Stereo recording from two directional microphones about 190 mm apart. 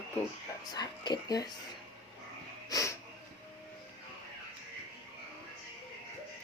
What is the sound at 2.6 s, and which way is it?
Wheeze, 20° left (ahead or behind).